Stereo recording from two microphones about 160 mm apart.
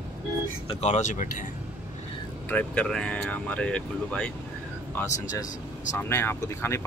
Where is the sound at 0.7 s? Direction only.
40° left (ahead or behind).